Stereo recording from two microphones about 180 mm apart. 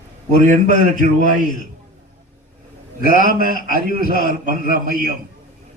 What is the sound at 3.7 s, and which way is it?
Speech, 55° left (ahead or behind).